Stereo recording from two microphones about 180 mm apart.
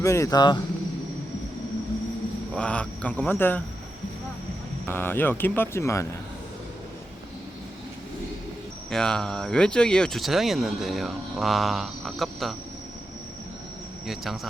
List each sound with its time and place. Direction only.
0.0 s speech: 15° left (ahead or behind)
2.6 s speech: 5° left (ahead or behind)
4.9 s speech: 10° left (ahead or behind)
8.9 s speech: 5° left (ahead or behind)